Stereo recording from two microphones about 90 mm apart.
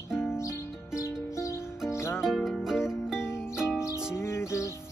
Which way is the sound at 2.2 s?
5° right (ahead or behind).